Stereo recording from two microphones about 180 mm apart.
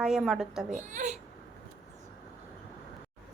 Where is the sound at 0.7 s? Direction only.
45° right (ahead or behind).